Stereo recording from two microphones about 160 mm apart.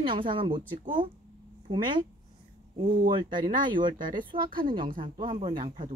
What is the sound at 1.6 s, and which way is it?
Speech, 30° right (ahead or behind).